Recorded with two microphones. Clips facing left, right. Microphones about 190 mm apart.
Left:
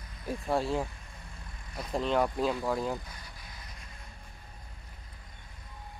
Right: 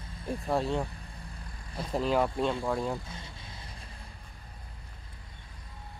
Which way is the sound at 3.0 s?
25° right (ahead or behind).